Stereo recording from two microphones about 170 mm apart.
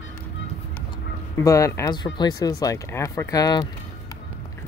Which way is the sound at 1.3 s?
20° left (ahead or behind).